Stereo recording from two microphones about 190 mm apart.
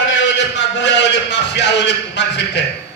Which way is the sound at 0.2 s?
70° left (ahead or behind).